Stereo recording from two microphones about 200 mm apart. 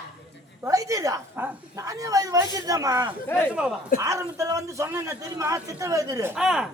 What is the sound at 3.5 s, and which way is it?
Speech, 5° right (ahead or behind).